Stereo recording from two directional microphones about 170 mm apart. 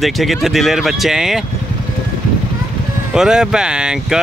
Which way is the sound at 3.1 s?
5° right (ahead or behind).